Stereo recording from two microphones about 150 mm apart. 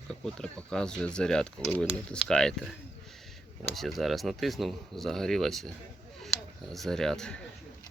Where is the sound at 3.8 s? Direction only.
Centre (ahead or behind).